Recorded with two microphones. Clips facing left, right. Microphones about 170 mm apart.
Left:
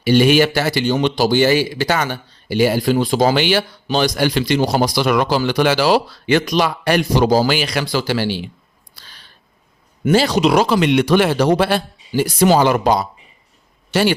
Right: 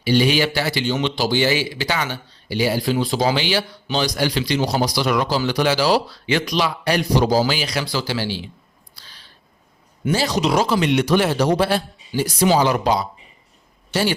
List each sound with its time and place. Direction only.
0.0 s speech: 55° left (ahead or behind)
10.0 s speech: 65° left (ahead or behind); by 13.1 s 45° left (ahead or behind)